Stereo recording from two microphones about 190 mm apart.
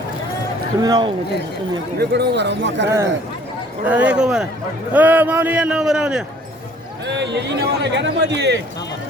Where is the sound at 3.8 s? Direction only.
10° right (ahead or behind).